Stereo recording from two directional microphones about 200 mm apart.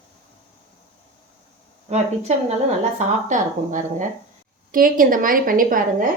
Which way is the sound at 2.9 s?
40° right (ahead or behind).